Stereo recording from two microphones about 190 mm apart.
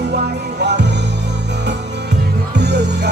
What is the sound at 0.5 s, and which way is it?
Music, 65° right (ahead or behind).